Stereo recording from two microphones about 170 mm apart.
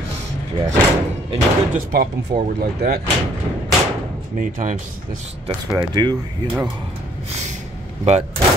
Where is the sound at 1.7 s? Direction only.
60° right (ahead or behind).